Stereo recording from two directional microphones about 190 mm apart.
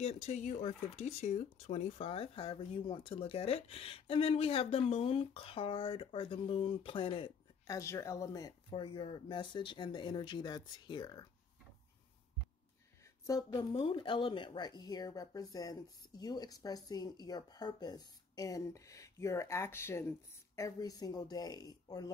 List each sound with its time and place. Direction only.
0.0 s speech: 35° left (ahead or behind)
7.6 s speech: 15° left (ahead or behind)
13.3 s speech: 20° left (ahead or behind)